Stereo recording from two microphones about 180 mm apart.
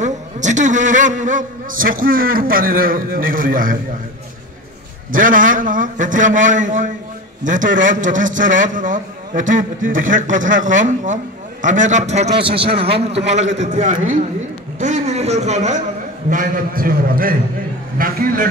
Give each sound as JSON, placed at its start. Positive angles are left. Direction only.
{"t": 0.0, "sound": "a man's voice", "side_deg": -40}
{"t": 5.1, "sound": "a man's voice", "side_deg": -50}
{"t": 12.4, "sound": "a man's voice", "side_deg": -30}
{"t": 13.6, "sound": "a man's voice", "side_deg": -45}
{"t": 16.3, "sound": "a man's voice", "side_deg": -50}